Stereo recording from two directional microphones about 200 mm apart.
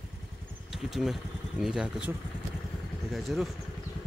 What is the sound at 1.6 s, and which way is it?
Speech, centre (ahead or behind).